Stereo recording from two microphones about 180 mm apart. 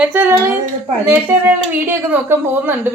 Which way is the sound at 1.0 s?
10° right (ahead or behind).